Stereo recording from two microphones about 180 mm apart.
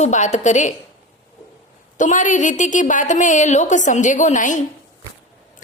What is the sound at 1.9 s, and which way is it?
A woman's voice, 45° left (ahead or behind).